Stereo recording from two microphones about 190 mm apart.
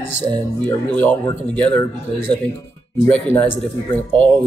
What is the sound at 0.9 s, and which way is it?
Speech, 5° left (ahead or behind).